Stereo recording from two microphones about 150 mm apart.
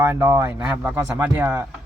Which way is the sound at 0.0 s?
15° right (ahead or behind).